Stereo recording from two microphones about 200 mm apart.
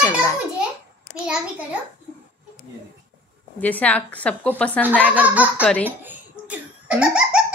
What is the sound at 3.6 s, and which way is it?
A woman's voice, 10° left (ahead or behind).